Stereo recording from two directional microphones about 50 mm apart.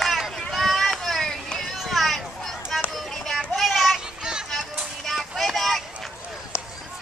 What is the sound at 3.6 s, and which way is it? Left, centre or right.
Child singing, centre.